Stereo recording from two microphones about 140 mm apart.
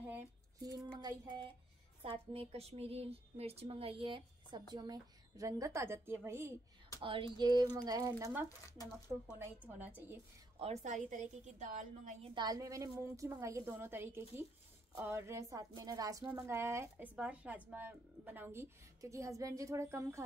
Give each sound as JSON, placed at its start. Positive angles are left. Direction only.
{"t": 0.6, "sound": "a woman's voice", "side_deg": -25}
{"t": 2.0, "sound": "a woman's voice", "side_deg": -45}
{"t": 7.0, "sound": "a woman's voice", "side_deg": -40}
{"t": 8.2, "sound": "speech", "side_deg": -15}
{"t": 10.6, "sound": "a woman's voice", "side_deg": -55}
{"t": 12.4, "sound": "a woman's voice", "side_deg": -25}